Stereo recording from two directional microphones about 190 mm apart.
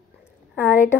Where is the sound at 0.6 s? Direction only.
10° left (ahead or behind).